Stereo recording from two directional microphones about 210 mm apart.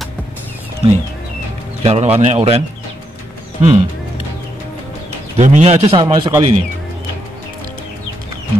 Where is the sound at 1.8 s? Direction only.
30° right (ahead or behind).